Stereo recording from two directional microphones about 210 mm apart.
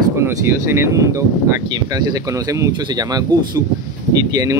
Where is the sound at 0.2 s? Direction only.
10° right (ahead or behind).